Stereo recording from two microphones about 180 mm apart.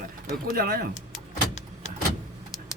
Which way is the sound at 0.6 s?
55° right (ahead or behind).